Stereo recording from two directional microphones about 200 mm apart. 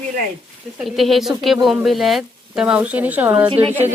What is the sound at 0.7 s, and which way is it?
Speech, centre (ahead or behind).